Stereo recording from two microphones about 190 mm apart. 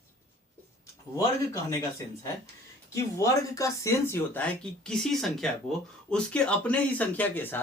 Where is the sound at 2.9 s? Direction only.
15° left (ahead or behind).